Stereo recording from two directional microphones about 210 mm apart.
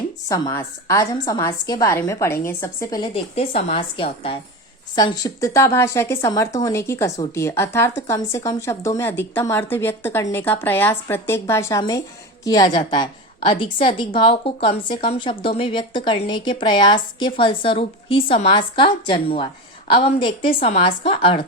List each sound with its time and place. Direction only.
0.3 s a woman's voice: 15° left (ahead or behind)
3.0 s a woman's voice: 30° left (ahead or behind)